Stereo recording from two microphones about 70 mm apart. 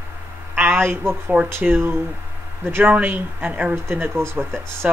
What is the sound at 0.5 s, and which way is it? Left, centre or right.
Speech, right.